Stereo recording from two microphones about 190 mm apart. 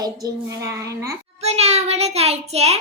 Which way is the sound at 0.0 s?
15° right (ahead or behind).